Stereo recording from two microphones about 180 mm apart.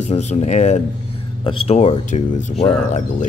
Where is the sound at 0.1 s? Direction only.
35° left (ahead or behind).